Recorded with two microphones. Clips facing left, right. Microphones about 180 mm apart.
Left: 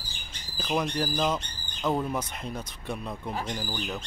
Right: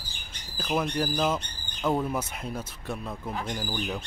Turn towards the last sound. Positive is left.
turn(degrees=-10)  # may be behind; listen again after turning